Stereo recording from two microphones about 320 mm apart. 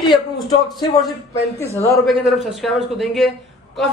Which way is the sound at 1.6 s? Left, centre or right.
Centre.